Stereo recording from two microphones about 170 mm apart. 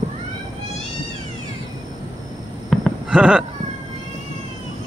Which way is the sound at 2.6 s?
5° right (ahead or behind).